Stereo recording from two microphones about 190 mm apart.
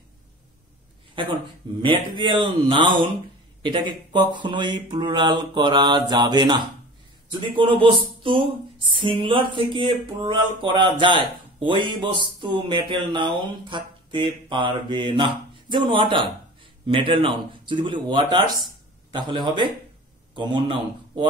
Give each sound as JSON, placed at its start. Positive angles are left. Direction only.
{"t": 1.2, "sound": "a man's voice", "side_deg": -25}